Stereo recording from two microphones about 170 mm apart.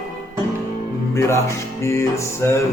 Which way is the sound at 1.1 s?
15° left (ahead or behind).